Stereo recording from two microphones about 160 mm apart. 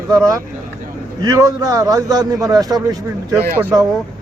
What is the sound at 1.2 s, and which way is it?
A man's voice, 20° right (ahead or behind).